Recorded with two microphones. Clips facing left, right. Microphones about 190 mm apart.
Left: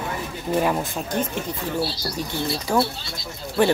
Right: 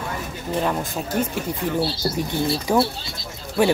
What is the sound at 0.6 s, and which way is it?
Speech, 5° left (ahead or behind).